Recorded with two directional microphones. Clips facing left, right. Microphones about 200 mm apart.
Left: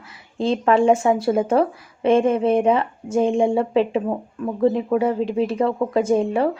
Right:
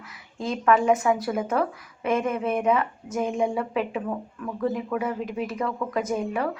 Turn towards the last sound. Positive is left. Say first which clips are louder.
# left 8 dB
turn(degrees=30)  # may be behind; listen again after turning